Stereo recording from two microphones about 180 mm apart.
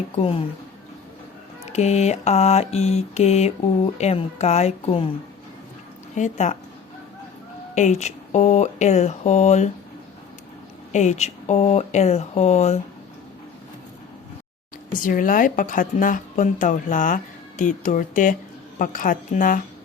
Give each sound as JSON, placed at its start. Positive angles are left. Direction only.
{"t": 0.2, "sound": "speech", "side_deg": 30}
{"t": 1.7, "sound": "speech", "side_deg": 40}
{"t": 6.1, "sound": "speech", "side_deg": 40}
{"t": 7.8, "sound": "speech", "side_deg": 40}
{"t": 10.9, "sound": "speech", "side_deg": 40}
{"t": 15.0, "sound": "speech", "side_deg": 50}